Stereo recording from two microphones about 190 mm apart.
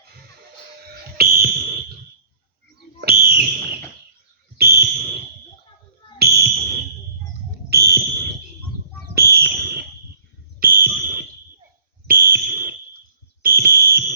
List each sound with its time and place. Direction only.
1.1 s fire alarm: 55° right (ahead or behind)
3.0 s whistle: 55° right (ahead or behind)
4.5 s a sound: 55° right (ahead or behind)
6.1 s fire alarm: 55° right (ahead or behind)
7.7 s a sound: 60° right (ahead or behind)
12.0 s fire alarm: 50° right (ahead or behind)